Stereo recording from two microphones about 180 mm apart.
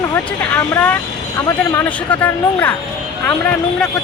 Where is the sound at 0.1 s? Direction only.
10° left (ahead or behind).